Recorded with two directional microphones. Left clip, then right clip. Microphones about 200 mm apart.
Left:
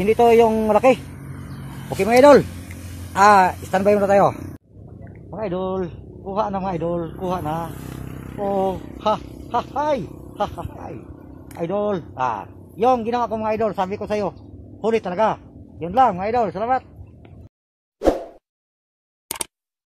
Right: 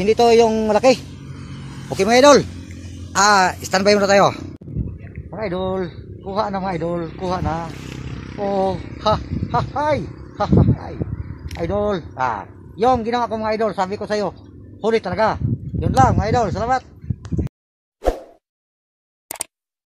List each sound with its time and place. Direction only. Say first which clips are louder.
0.0 s a man's voice: right 1 dB; 5° right (ahead or behind)